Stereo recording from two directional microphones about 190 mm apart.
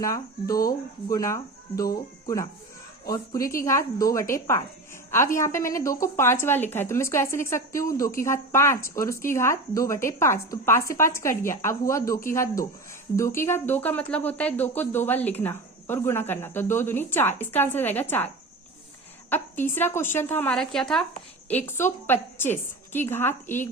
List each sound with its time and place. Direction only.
0.0 s speech: 15° left (ahead or behind)
3.5 s speech: 15° left (ahead or behind)
19.3 s speech: 10° left (ahead or behind)